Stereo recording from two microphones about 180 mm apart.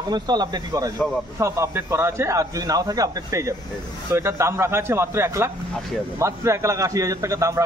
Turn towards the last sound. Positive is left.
turn(degrees=-15)  # may be behind; listen again after turning